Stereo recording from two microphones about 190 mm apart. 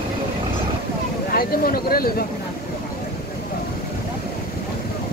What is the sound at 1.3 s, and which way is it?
Speech, 50° left (ahead or behind).